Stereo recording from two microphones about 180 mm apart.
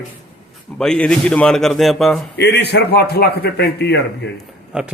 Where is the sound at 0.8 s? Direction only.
5° left (ahead or behind).